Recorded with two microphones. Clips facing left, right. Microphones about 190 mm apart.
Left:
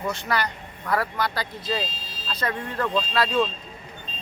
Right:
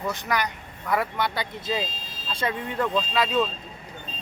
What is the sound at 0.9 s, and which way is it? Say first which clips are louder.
Speech: even; 20° right (ahead or behind).